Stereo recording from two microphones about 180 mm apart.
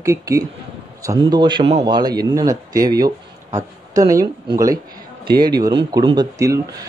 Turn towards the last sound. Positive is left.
turn(degrees=-20)  # may be behind; listen again after turning